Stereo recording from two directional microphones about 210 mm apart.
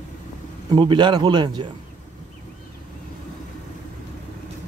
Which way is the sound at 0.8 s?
20° right (ahead or behind).